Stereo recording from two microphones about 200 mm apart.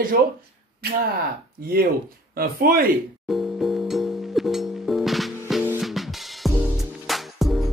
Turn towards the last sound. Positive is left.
turn(degrees=0)  # may be behind; listen again after turning